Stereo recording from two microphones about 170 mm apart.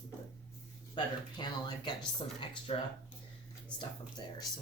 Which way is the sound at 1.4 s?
25° left (ahead or behind).